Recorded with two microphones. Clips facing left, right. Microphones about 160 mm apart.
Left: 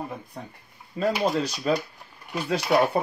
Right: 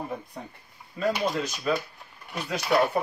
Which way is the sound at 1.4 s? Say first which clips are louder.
Left 3 dB; 35° left (ahead or behind).